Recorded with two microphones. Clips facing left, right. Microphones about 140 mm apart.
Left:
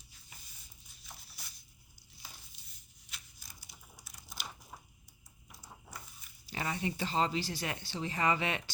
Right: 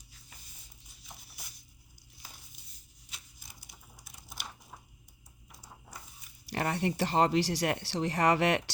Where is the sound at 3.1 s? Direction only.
25° right (ahead or behind).